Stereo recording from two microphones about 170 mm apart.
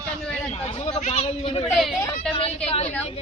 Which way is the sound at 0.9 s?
35° left (ahead or behind).